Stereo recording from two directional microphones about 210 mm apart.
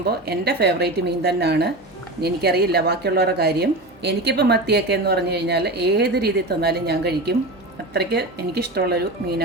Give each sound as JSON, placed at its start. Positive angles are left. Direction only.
{"t": 0.0, "sound": "a woman's voice", "side_deg": -50}